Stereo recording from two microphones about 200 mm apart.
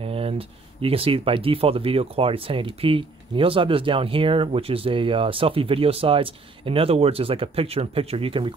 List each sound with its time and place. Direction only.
0.0 s speech: 30° right (ahead or behind)